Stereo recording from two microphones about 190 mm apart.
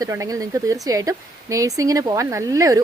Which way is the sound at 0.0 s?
15° right (ahead or behind).